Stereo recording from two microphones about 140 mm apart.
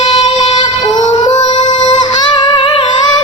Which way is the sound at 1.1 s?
30° left (ahead or behind).